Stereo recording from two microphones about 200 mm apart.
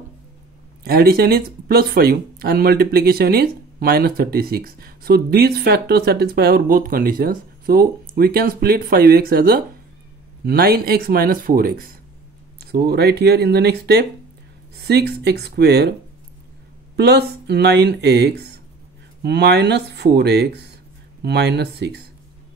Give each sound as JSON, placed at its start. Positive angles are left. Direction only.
{"t": 0.8, "sound": "speech", "side_deg": -50}
{"t": 16.9, "sound": "speech", "side_deg": -55}